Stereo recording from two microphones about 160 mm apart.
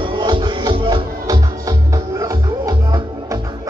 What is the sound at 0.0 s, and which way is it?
Music, 30° right (ahead or behind).